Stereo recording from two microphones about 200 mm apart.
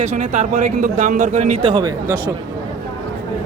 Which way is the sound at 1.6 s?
25° right (ahead or behind).